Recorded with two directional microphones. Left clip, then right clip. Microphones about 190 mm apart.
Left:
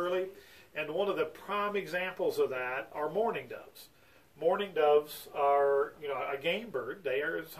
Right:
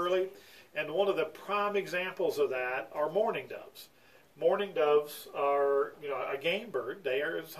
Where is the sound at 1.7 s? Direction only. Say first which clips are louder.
Right 1 dB; 10° right (ahead or behind).